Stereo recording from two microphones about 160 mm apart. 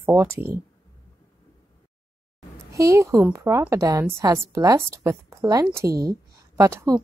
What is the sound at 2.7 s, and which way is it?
Speech, 20° right (ahead or behind).